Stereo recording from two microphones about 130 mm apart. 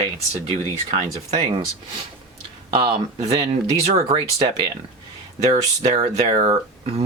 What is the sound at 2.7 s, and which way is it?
Speech, 40° right (ahead or behind).